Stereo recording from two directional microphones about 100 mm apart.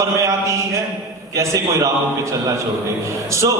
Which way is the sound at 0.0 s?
30° right (ahead or behind).